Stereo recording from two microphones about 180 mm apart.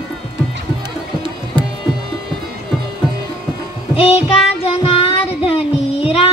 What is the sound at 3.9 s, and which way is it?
Child singing, 35° left (ahead or behind).